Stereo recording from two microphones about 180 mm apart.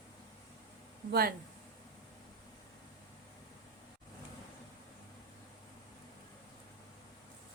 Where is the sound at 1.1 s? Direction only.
60° right (ahead or behind).